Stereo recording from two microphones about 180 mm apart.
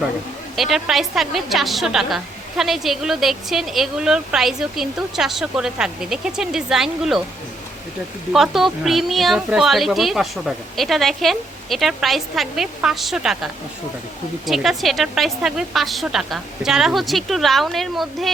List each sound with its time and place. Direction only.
0.5 s a woman's voice: centre (ahead or behind)
8.3 s a woman's voice: centre (ahead or behind)